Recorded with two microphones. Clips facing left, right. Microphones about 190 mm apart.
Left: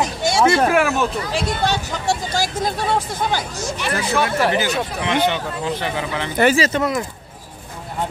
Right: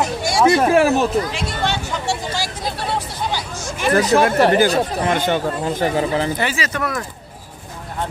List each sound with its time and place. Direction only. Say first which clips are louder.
0.2 s a sound: right 1 dB; 25° left (ahead or behind)
0.7 s speech: right 3 dB; 30° right (ahead or behind)
1.3 s speech: left 2 dB; 40° left (ahead or behind)
3.7 s speech: right 7 dB; 45° right (ahead or behind)
6.4 s speech: left 7 dB; 35° left (ahead or behind)
6.7 s speech: left 4 dB; 20° left (ahead or behind)